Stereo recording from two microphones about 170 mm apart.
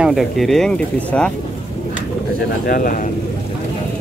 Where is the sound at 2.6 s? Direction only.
55° left (ahead or behind).